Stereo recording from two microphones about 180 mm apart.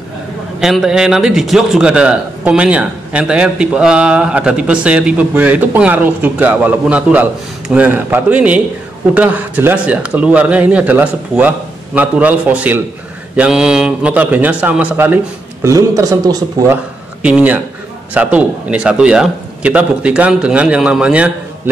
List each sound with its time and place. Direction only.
0.6 s a man's voice: 5° right (ahead or behind); by 16.7 s 20° right (ahead or behind)
17.2 s a man's voice: 10° right (ahead or behind)